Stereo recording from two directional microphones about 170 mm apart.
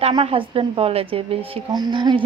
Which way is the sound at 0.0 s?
30° right (ahead or behind).